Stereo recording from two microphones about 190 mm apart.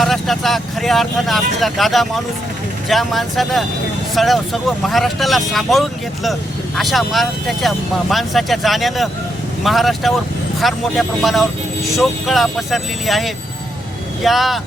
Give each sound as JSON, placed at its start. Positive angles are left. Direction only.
{"t": 0.0, "sound": "speech", "side_deg": 0}